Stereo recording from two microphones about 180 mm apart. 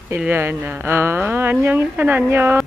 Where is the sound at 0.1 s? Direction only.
10° right (ahead or behind).